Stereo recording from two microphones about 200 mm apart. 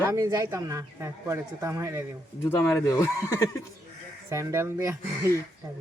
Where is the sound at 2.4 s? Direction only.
10° left (ahead or behind).